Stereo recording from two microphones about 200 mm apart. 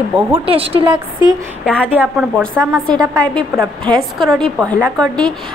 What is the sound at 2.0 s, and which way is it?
A woman's voice, 5° right (ahead or behind).